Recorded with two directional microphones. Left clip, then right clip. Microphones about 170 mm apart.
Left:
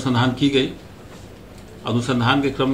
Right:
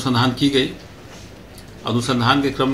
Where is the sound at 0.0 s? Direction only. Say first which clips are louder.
Right 2 dB; 5° left (ahead or behind).